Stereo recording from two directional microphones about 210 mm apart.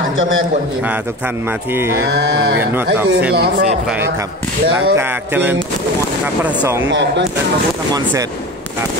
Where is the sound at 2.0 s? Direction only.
50° right (ahead or behind).